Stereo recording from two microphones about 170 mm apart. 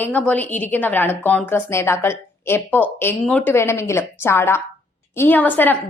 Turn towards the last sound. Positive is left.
turn(degrees=10)  # may be behind; listen again after turning